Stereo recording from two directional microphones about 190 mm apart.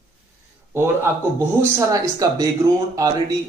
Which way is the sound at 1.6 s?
15° right (ahead or behind).